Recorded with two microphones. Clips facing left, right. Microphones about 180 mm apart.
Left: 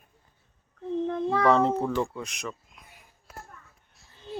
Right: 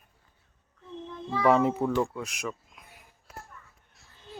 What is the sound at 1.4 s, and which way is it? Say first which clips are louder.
A child's voice: right 1 dB; 5° right (ahead or behind).